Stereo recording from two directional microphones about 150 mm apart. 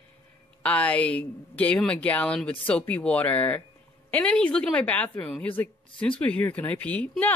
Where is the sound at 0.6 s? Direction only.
10° left (ahead or behind).